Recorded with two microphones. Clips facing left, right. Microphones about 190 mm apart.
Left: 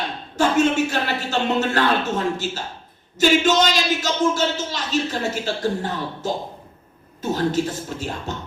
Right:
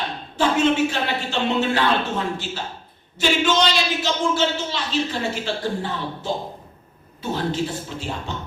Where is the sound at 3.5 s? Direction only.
45° left (ahead or behind).